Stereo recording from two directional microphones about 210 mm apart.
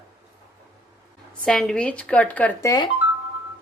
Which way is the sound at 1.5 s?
Centre (ahead or behind).